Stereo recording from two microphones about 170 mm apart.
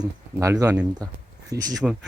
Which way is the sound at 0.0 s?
20° right (ahead or behind).